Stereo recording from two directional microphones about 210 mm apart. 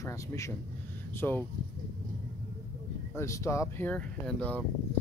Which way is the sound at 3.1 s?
15° left (ahead or behind).